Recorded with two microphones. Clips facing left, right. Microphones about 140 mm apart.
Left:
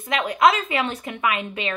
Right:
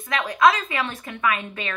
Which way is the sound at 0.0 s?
25° left (ahead or behind).